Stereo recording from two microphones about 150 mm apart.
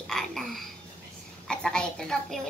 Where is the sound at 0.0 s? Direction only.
Centre (ahead or behind).